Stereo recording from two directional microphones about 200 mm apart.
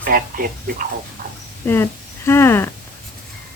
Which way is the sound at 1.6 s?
10° left (ahead or behind).